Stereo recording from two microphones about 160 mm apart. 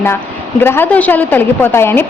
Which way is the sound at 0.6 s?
15° left (ahead or behind).